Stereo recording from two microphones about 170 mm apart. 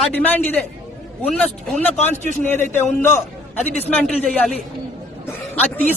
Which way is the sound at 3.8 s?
10° left (ahead or behind).